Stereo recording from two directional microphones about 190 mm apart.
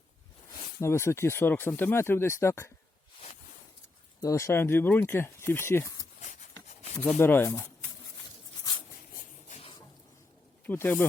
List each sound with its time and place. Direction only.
0.8 s speech: 15° left (ahead or behind)
4.2 s speech: 15° left (ahead or behind)
9.5 s a sound: 35° left (ahead or behind)
10.7 s speech: 10° left (ahead or behind)